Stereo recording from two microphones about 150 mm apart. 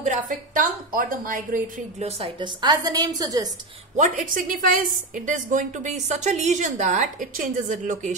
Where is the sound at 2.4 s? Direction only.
30° right (ahead or behind).